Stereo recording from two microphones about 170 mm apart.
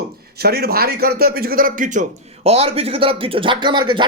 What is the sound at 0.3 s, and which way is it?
A man's voice, 65° right (ahead or behind).